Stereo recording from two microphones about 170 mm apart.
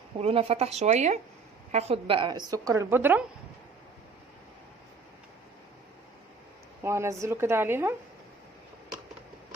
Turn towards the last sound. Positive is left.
turn(degrees=-15)  # may be behind; listen again after turning